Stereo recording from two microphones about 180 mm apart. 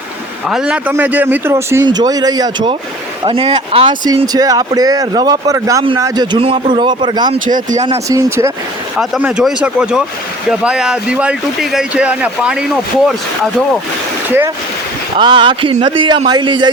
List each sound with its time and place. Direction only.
0.4 s a man's voice: 5° right (ahead or behind); by 7.3 s 25° right (ahead or behind)
7.4 s speech: 45° right (ahead or behind)
8.0 s a man's voice: 20° right (ahead or behind)
9.0 s speech: 5° right (ahead or behind)
14.3 s speech: 10° right (ahead or behind)
15.2 s speech: 25° right (ahead or behind)